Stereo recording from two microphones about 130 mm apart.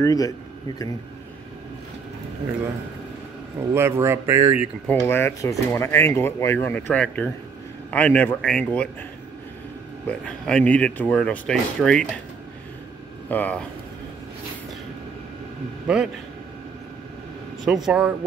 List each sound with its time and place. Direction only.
0.0 s a man's voice: 25° left (ahead or behind)
3.7 s speech: 20° right (ahead or behind)
4.9 s speech: 20° left (ahead or behind)
10.0 s speech: 10° left (ahead or behind)
13.3 s speech: 10° left (ahead or behind)
15.9 s speech: 5° right (ahead or behind)
17.6 s speech: 5° right (ahead or behind)